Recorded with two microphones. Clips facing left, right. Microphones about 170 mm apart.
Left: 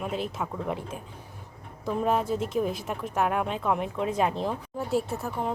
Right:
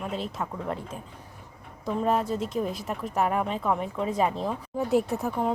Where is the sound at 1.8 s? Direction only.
Centre (ahead or behind).